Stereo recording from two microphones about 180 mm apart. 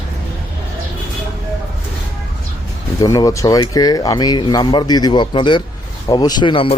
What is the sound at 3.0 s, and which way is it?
Speech, 20° left (ahead or behind).